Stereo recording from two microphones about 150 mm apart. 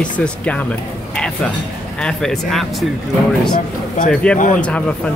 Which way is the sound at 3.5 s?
60° left (ahead or behind).